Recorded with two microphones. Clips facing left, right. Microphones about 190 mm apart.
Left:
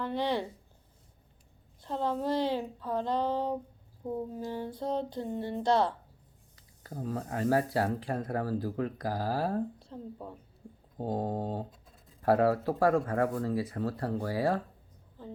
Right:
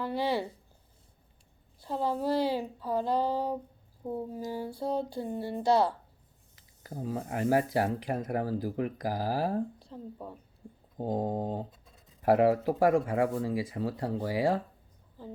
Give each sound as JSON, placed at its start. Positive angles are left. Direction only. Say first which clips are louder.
{"t": 0.0, "sound": "speech", "louder": "right 1 dB", "side_deg": -5}
{"t": 1.8, "sound": "speech", "louder": "right 1 dB", "side_deg": -5}
{"t": 4.9, "sound": "music", "louder": "right 1 dB", "side_deg": 20}
{"t": 5.1, "sound": "speech", "louder": "even", "side_deg": -10}
{"t": 7.2, "sound": "speech", "louder": "right 1 dB", "side_deg": -25}
{"t": 9.7, "sound": "a woman's voice", "louder": "even", "side_deg": 0}
{"t": 11.0, "sound": "speech", "louder": "right 1 dB", "side_deg": -20}
{"t": 11.7, "sound": "a sound", "louder": "left 1 dB", "side_deg": 0}
{"t": 12.2, "sound": "speech", "louder": "right 2 dB", "side_deg": -15}